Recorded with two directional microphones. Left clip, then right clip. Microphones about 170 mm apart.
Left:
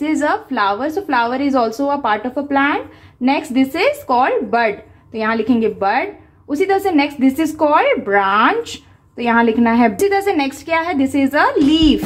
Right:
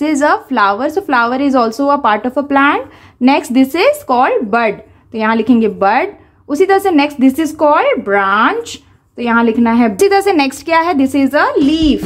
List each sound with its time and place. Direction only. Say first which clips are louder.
0.0 s a woman's voice: right 5 dB; 30° right (ahead or behind)
9.9 s a woman's voice: right 5 dB; 30° right (ahead or behind); by 12.0 s 10° right (ahead or behind)